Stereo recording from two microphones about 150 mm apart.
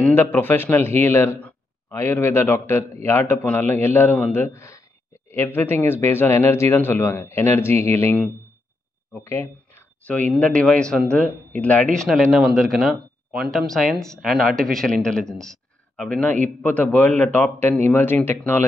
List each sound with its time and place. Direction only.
0.1 s speech: 15° left (ahead or behind)